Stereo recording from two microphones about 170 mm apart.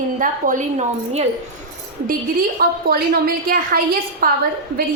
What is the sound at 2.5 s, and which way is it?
A woman's voice, 65° right (ahead or behind).